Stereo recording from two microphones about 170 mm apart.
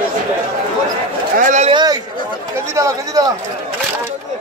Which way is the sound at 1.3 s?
50° right (ahead or behind).